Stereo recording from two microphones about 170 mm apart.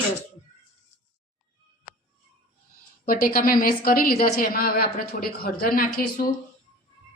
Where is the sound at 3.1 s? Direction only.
55° left (ahead or behind).